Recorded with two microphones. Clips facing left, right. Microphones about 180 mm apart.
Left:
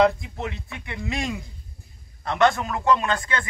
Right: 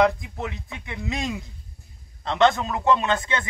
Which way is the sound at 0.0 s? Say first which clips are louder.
Left 1 dB; 15° right (ahead or behind).